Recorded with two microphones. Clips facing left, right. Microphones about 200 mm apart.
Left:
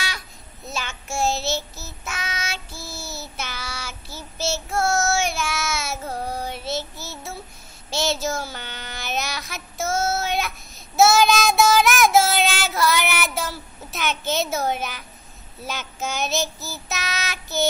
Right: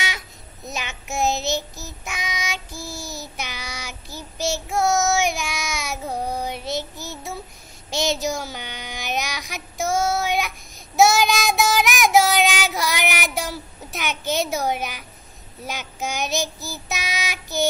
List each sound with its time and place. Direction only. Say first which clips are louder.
0.7 s child singing: even; 15° right (ahead or behind)